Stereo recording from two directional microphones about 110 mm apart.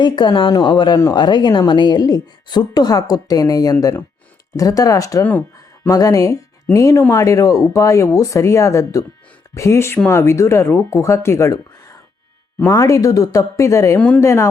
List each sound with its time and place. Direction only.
0.0 s a woman's voice: 45° left (ahead or behind); by 14.4 s 25° left (ahead or behind)